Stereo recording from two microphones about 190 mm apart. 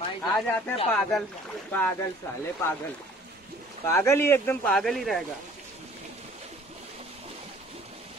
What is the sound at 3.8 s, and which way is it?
Speech, 10° left (ahead or behind).